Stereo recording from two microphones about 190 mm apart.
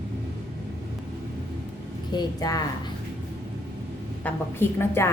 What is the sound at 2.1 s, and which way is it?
Speech, 20° left (ahead or behind).